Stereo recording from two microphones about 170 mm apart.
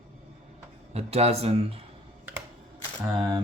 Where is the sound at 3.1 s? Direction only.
20° right (ahead or behind).